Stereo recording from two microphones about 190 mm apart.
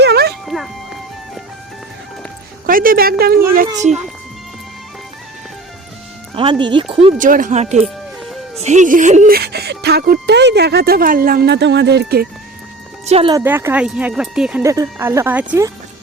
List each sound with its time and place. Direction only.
0.0 s music: 60° right (ahead or behind)
0.4 s music: centre (ahead or behind)
2.6 s speech: 50° right (ahead or behind)
3.8 s speech: 40° right (ahead or behind)
6.3 s speech: 25° right (ahead or behind)
7.2 s speech: 45° right (ahead or behind)
13.1 s speech: 30° right (ahead or behind)
13.3 s speech: 15° right (ahead or behind)
14.6 s speech: 15° right (ahead or behind)